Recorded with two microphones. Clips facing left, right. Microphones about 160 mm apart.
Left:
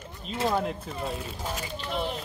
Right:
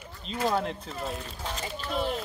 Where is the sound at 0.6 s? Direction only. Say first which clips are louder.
Left 1 dB; 5° left (ahead or behind).